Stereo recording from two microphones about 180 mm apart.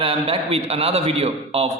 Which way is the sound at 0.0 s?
35° right (ahead or behind).